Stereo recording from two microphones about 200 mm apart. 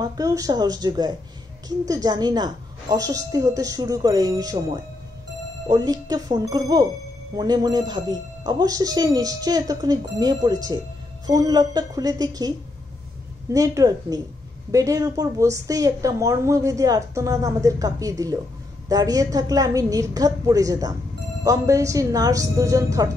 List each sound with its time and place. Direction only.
0.0 s a woman's voice: 15° right (ahead or behind)